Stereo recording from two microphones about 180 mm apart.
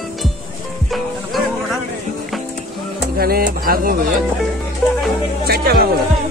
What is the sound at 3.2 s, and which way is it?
Speech, 55° right (ahead or behind).